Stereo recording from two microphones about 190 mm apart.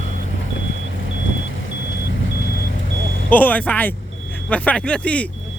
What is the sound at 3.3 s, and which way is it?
Speech, 10° left (ahead or behind).